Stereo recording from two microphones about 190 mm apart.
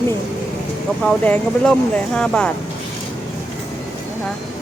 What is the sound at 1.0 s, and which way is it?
Speech, 5° left (ahead or behind).